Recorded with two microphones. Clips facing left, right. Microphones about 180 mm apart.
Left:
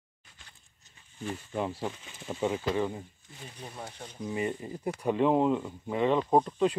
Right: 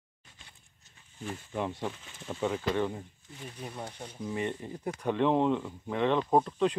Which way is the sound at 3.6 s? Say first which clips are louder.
Right 2 dB; 10° right (ahead or behind).